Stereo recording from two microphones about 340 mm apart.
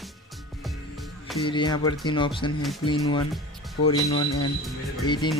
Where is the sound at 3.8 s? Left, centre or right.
Centre.